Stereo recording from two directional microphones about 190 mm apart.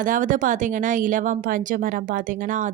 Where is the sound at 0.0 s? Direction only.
45° right (ahead or behind).